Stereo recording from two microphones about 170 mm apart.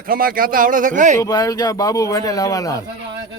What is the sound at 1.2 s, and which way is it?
A man's voice, 20° left (ahead or behind).